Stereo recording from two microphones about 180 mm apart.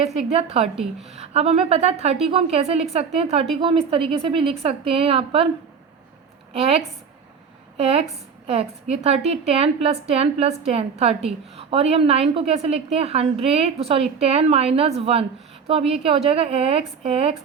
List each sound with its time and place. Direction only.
0.0 s a woman's voice: 35° right (ahead or behind)
6.5 s a woman's voice: 35° right (ahead or behind)